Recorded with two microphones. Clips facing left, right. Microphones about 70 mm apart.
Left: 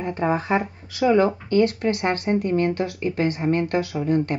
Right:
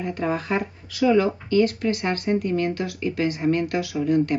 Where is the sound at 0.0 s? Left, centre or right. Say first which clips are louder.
Left 2 dB; left.